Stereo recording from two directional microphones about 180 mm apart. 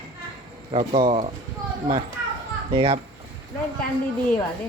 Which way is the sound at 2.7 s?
30° right (ahead or behind).